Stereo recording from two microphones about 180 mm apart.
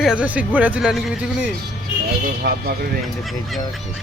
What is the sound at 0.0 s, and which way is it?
Speech, 5° right (ahead or behind).